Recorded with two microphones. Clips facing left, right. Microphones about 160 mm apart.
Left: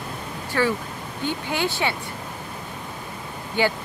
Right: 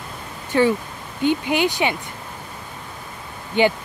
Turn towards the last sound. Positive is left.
turn(degrees=-20)  # may be behind; listen again after turning